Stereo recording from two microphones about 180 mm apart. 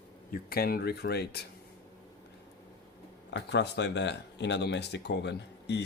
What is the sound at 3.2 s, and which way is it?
Speech, 75° left (ahead or behind).